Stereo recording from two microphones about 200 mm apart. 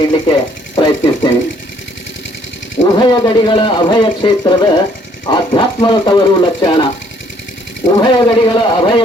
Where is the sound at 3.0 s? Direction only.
20° left (ahead or behind).